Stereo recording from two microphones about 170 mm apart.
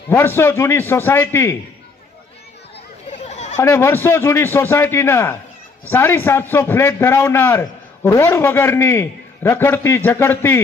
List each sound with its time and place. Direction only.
0.1 s a man's voice: 15° left (ahead or behind)
3.1 s a sound: 40° left (ahead or behind)
3.5 s a man's voice: 15° left (ahead or behind)